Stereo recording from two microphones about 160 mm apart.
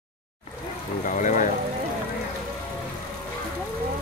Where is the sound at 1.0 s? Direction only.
50° left (ahead or behind).